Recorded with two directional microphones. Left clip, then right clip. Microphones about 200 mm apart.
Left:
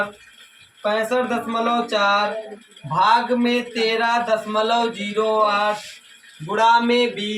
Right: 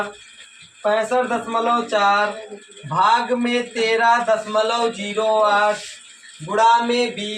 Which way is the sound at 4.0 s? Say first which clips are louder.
Right 3 dB; 15° left (ahead or behind).